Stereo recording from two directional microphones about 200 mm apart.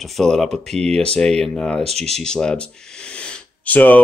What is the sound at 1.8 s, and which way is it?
Speech, 30° right (ahead or behind).